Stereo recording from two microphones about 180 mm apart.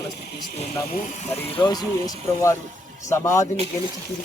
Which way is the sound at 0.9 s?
45° left (ahead or behind).